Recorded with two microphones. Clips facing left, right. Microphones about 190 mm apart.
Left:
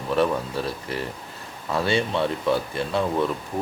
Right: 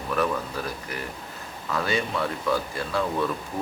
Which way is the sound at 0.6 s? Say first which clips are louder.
Left 4 dB; 30° left (ahead or behind).